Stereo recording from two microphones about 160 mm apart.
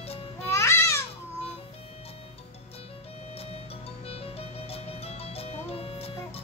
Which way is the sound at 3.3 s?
40° left (ahead or behind).